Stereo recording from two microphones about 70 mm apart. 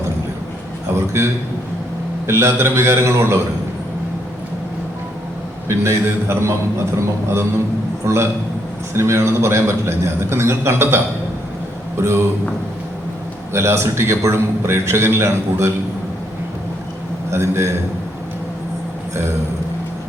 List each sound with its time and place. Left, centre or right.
0.9 s a man's voice: right
5.6 s a man's voice: right
13.5 s a man's voice: right
17.3 s a man's voice: right